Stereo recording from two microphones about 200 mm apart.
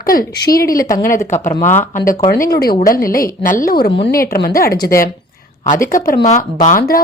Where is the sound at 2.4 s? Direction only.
50° left (ahead or behind).